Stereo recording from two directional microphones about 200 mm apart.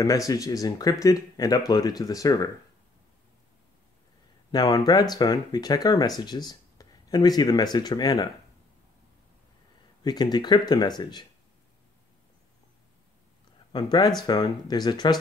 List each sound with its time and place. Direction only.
0.0 s speech: 15° left (ahead or behind)
4.5 s speech: 20° left (ahead or behind)
10.0 s speech: 20° left (ahead or behind)
13.7 s speech: 20° left (ahead or behind)